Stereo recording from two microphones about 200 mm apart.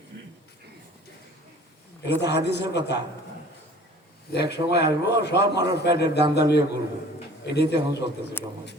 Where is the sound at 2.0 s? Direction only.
60° left (ahead or behind).